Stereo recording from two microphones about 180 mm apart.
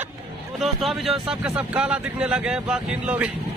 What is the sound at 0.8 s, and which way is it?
Speech, centre (ahead or behind).